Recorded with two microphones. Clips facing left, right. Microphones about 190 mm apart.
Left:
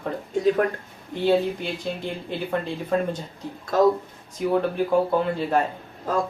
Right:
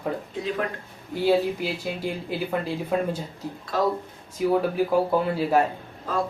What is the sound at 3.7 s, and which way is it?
Speech, 45° left (ahead or behind).